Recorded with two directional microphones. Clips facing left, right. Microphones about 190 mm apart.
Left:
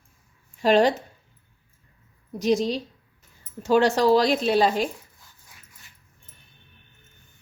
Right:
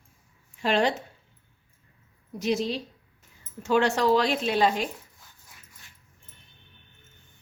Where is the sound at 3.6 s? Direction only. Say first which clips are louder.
Left 4 dB; 35° left (ahead or behind).